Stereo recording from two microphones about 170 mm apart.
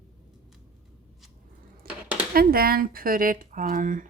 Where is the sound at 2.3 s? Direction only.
60° right (ahead or behind).